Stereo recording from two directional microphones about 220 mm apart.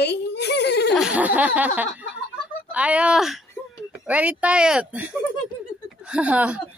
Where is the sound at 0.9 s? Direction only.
5° right (ahead or behind).